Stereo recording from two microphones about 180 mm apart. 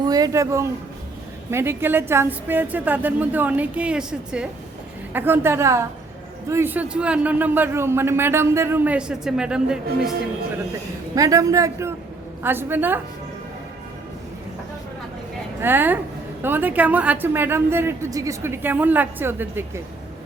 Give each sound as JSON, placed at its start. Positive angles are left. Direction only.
{"t": 0.0, "sound": "a man's voice", "side_deg": -20}
{"t": 11.1, "sound": "a woman's voice", "side_deg": -20}
{"t": 15.6, "sound": "a woman's voice", "side_deg": -10}